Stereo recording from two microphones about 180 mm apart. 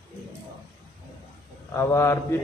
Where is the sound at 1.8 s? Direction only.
15° left (ahead or behind).